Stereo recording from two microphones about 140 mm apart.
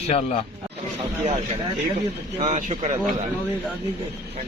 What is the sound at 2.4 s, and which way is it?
Speech, 55° right (ahead or behind).